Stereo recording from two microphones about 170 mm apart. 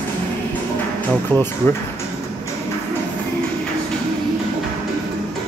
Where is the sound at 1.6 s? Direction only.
15° left (ahead or behind).